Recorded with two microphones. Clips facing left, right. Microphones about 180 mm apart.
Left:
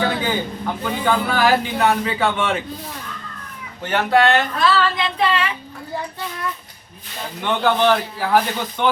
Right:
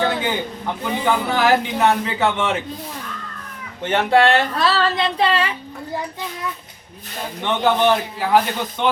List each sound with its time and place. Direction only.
0.0 s a sound: 20° right (ahead or behind)
0.9 s a man's voice: 15° right (ahead or behind)
3.8 s speech: 25° right (ahead or behind)
7.4 s a man's voice: 15° right (ahead or behind)